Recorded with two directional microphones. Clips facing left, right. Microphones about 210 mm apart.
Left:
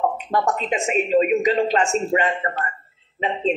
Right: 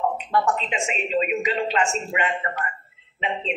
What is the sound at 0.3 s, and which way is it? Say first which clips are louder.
Speech: left 1 dB; 40° left (ahead or behind).